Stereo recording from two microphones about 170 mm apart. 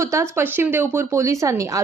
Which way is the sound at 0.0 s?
15° right (ahead or behind).